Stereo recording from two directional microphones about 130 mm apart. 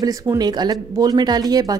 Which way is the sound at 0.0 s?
25° right (ahead or behind).